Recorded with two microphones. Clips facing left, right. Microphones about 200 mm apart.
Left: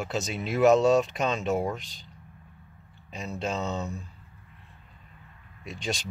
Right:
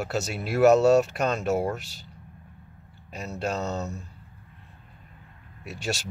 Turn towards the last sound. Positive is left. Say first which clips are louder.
# right 1 dB
turn(degrees=-5)  # may be behind; listen again after turning